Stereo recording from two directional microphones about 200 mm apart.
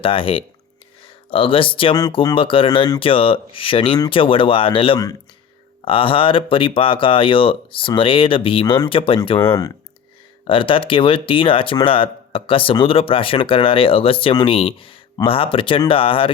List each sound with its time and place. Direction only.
0.0 s speech: 25° left (ahead or behind)